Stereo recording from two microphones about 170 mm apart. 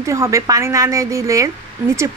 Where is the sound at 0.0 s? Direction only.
20° right (ahead or behind).